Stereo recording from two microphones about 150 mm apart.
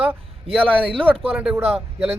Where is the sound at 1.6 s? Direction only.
40° right (ahead or behind).